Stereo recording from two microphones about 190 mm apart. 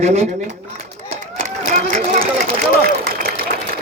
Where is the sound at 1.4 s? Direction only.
40° right (ahead or behind).